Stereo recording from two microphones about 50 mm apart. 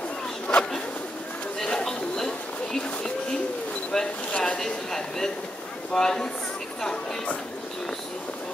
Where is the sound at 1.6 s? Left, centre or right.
Centre.